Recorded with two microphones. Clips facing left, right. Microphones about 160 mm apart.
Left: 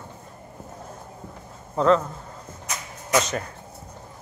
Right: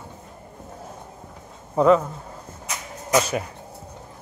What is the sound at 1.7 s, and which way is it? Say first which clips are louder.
Speech: right 3 dB; 10° right (ahead or behind).